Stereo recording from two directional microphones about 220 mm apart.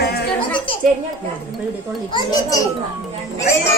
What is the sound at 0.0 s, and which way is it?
Music, 45° left (ahead or behind).